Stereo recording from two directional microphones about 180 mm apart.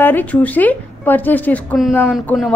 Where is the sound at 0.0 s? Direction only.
10° left (ahead or behind).